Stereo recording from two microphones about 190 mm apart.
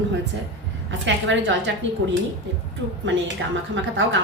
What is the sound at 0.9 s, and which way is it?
Speech, 75° right (ahead or behind).